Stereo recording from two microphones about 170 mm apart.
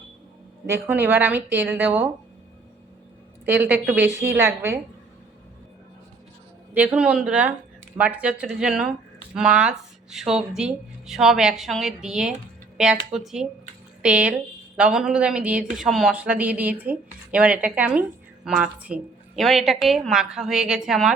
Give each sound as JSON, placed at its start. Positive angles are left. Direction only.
{"t": 0.7, "sound": "speech", "side_deg": -10}
{"t": 3.4, "sound": "speech", "side_deg": -10}
{"t": 6.7, "sound": "speech", "side_deg": -5}